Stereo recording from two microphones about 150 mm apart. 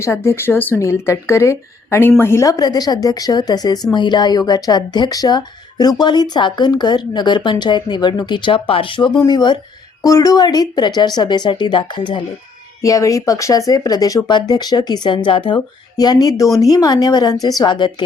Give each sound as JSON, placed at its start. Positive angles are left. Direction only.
{"t": 0.0, "sound": "a woman's voice", "side_deg": 15}